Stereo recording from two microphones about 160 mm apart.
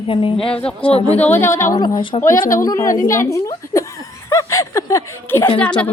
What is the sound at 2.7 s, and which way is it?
A woman's voice, 20° left (ahead or behind).